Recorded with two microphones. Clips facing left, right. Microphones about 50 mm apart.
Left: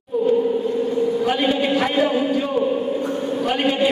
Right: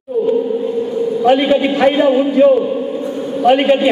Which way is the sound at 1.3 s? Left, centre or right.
Right.